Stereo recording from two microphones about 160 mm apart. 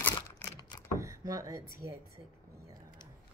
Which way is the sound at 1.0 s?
20° right (ahead or behind).